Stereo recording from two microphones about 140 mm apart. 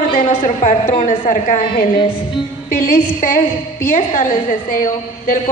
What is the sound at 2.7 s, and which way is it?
A woman's voice, 75° left (ahead or behind).